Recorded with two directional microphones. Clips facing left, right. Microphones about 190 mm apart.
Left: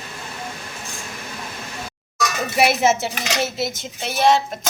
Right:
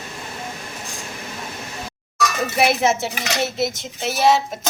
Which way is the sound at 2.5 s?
Centre (ahead or behind).